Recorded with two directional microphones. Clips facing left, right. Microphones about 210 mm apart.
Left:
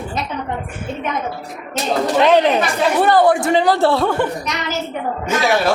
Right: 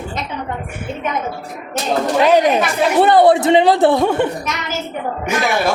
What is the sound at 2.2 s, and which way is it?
Speech, 10° right (ahead or behind).